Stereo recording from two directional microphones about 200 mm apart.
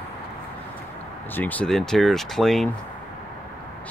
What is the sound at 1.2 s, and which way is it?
Speech, 10° left (ahead or behind).